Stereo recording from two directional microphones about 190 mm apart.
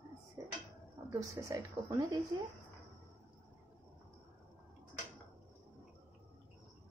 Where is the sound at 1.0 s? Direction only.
15° right (ahead or behind).